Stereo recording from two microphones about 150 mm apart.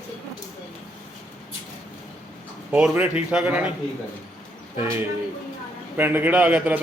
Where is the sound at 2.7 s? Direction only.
10° right (ahead or behind).